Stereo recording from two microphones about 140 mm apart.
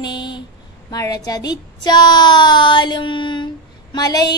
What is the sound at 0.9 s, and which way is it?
A woman's voice, 25° left (ahead or behind).